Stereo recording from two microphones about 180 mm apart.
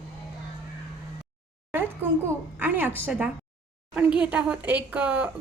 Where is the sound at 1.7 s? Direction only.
10° right (ahead or behind).